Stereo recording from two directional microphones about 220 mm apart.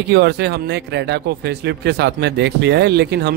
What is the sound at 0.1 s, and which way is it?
Speech, 50° right (ahead or behind).